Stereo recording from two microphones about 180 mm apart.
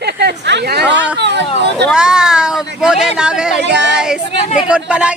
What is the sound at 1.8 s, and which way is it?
Speech, 5° right (ahead or behind).